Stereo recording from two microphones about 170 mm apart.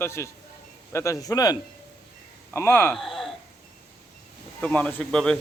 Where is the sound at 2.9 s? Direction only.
Centre (ahead or behind).